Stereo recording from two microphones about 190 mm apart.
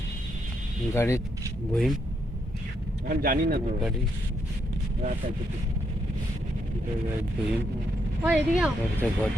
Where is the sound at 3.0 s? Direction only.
50° right (ahead or behind).